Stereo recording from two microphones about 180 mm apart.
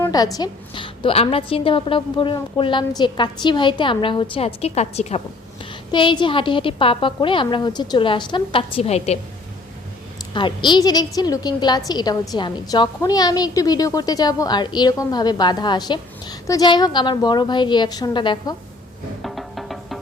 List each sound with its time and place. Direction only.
0.0 s a woman's voice: 20° left (ahead or behind)
10.3 s a woman's voice: 25° left (ahead or behind)
19.2 s music: centre (ahead or behind)